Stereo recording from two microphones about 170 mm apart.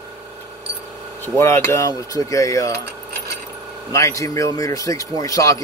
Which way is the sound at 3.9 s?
20° left (ahead or behind).